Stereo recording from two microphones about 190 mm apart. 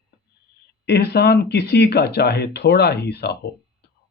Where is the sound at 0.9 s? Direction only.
55° left (ahead or behind).